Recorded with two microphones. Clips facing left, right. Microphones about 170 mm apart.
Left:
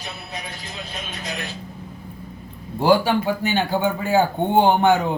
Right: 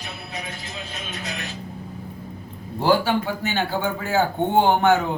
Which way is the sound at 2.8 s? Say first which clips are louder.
Left 2 dB; 15° left (ahead or behind).